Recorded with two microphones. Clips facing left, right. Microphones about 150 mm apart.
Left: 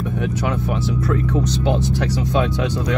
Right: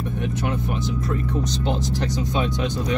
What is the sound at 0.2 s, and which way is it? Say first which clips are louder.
Speech: left 3 dB; 70° left (ahead or behind).